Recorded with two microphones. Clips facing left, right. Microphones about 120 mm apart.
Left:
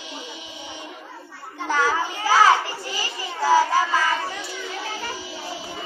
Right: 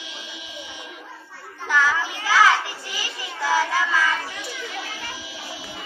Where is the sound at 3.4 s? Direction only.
40° left (ahead or behind).